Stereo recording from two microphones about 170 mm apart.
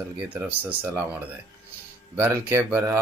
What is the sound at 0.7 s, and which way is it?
Speech, 10° right (ahead or behind).